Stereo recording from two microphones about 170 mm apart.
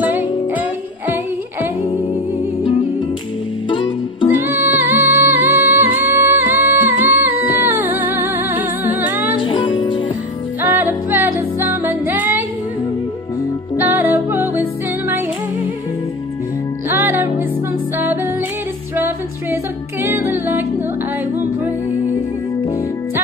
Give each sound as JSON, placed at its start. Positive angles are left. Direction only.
{"t": 0.0, "sound": "music", "side_deg": -10}
{"t": 3.6, "sound": "music", "side_deg": 30}
{"t": 4.4, "sound": "music", "side_deg": -10}
{"t": 9.4, "sound": "music", "side_deg": 30}
{"t": 11.1, "sound": "music", "side_deg": -10}
{"t": 13.7, "sound": "music", "side_deg": -10}
{"t": 16.9, "sound": "music", "side_deg": -10}